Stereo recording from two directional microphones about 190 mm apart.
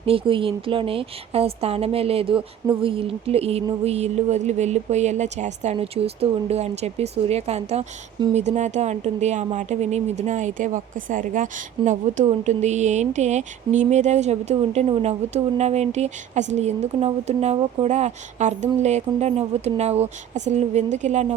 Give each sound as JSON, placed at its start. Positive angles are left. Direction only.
{"t": 0.0, "sound": "speech", "side_deg": -30}